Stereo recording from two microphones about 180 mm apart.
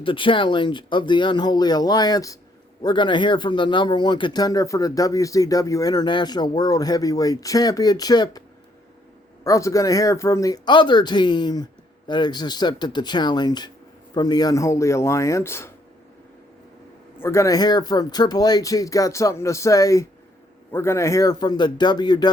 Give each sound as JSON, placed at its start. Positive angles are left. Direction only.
{"t": 0.0, "sound": "speech", "side_deg": 30}
{"t": 17.2, "sound": "speech", "side_deg": 15}